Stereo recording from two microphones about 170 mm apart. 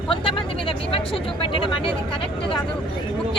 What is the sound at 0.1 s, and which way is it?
Vehicle, 30° left (ahead or behind).